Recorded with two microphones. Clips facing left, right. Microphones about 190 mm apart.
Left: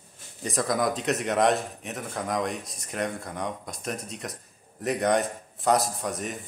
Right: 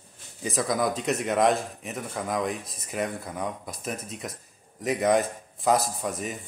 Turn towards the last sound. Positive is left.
turn(degrees=0)  # may be behind; listen again after turning